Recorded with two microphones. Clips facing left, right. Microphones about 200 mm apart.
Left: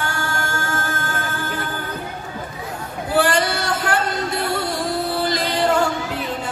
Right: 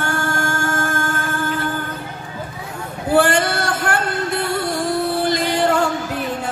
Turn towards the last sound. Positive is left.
turn(degrees=-50)  # may be behind; listen again after turning